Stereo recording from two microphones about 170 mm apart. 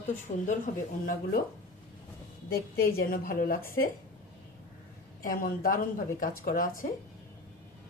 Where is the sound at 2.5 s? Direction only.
60° left (ahead or behind).